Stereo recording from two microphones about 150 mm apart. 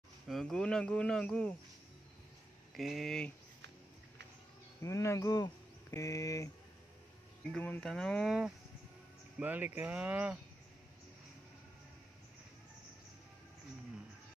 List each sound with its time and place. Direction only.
0.3 s speech: 5° left (ahead or behind)
2.7 s speech: centre (ahead or behind)
4.8 s speech: 20° left (ahead or behind)
7.5 s speech: 10° left (ahead or behind); by 10.4 s 10° right (ahead or behind)